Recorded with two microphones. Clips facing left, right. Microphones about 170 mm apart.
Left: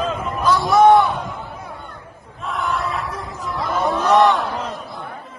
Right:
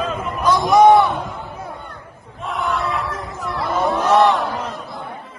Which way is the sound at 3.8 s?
Centre (ahead or behind).